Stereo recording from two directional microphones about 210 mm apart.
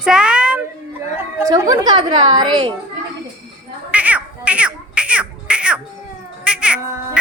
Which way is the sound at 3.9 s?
5° right (ahead or behind).